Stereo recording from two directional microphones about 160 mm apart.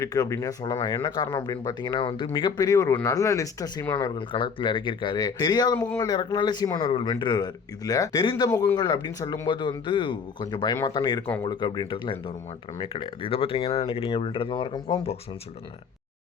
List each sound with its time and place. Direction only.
0.0 s speech: 20° left (ahead or behind)